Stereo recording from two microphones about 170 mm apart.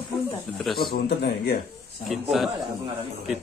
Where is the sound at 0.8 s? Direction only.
70° left (ahead or behind).